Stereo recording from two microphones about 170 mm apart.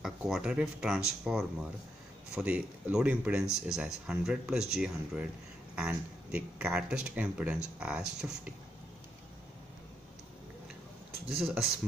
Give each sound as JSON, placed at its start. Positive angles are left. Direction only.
{"t": 0.0, "sound": "speech", "side_deg": -5}
{"t": 11.2, "sound": "speech", "side_deg": -5}